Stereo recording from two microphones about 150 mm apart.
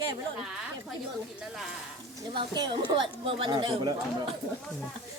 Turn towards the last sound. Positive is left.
turn(degrees=-30)  # may be behind; listen again after turning